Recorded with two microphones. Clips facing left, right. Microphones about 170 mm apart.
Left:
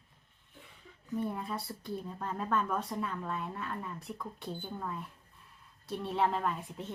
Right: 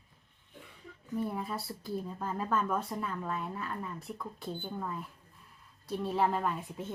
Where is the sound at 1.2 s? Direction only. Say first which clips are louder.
Right 1 dB; centre (ahead or behind).